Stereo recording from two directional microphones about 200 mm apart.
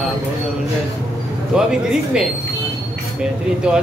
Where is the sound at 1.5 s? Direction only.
5° right (ahead or behind).